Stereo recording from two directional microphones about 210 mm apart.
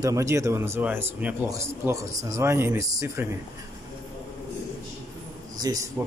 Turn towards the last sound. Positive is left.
turn(degrees=-15)  # may be behind; listen again after turning